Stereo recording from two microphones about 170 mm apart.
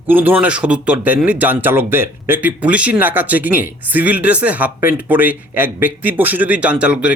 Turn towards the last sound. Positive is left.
turn(degrees=-5)  # may be behind; listen again after turning